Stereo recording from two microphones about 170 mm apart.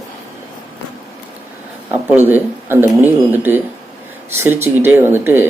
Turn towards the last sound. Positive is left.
turn(degrees=-15)  # may be behind; listen again after turning